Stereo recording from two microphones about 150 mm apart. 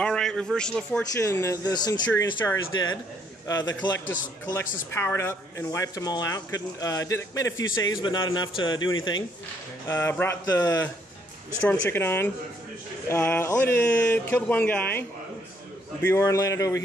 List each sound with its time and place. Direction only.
0.0 s a man's voice: 5° left (ahead or behind)
1.2 s speech: 20° left (ahead or behind)
4.9 s speech: 15° left (ahead or behind)
9.8 s speech: 20° left (ahead or behind)
11.6 s speech: 10° left (ahead or behind)